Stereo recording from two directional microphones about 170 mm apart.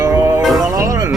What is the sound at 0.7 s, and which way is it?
Music, 20° right (ahead or behind).